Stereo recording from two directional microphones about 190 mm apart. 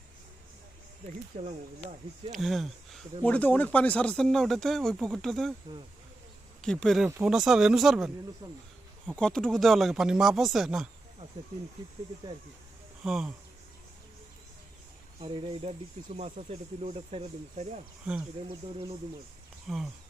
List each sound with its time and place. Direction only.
1.3 s speech: 40° right (ahead or behind)
2.3 s speech: centre (ahead or behind)
6.7 s speech: 5° left (ahead or behind)
13.1 s speech: 5° right (ahead or behind)
15.2 s speech: 25° right (ahead or behind)
18.0 s speech: 5° right (ahead or behind)
18.4 s speech: 30° right (ahead or behind)
19.6 s speech: centre (ahead or behind)